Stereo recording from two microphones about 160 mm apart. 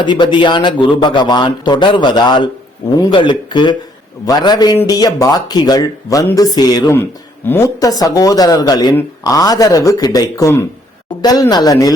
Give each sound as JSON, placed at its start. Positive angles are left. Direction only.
{"t": 0.0, "sound": "speech", "side_deg": 30}